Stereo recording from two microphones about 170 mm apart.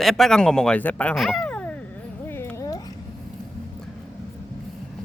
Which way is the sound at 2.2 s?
15° left (ahead or behind).